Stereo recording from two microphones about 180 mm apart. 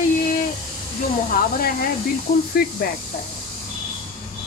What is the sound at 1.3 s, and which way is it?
Speech, 55° left (ahead or behind).